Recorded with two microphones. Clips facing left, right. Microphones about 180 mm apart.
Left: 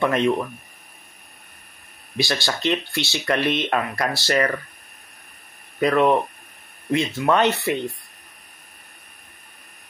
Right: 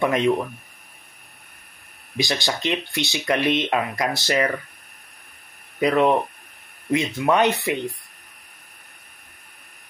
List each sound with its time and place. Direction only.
0.0 s speech: 15° right (ahead or behind)
2.1 s speech: 20° right (ahead or behind)
5.8 s speech: 15° right (ahead or behind)